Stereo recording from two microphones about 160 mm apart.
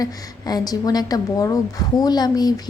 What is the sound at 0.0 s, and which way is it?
A woman's voice, 25° left (ahead or behind).